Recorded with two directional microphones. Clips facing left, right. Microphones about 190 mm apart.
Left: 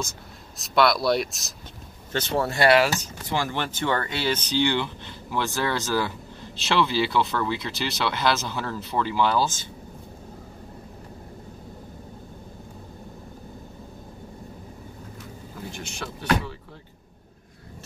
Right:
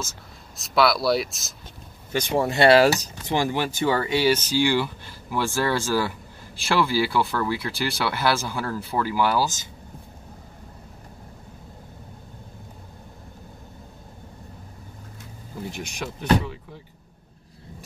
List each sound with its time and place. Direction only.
0.6 s speech: centre (ahead or behind)
2.1 s speech: 15° right (ahead or behind); by 3.1 s 35° right (ahead or behind)
3.3 s speech: 15° right (ahead or behind)
15.7 s speech: 15° right (ahead or behind)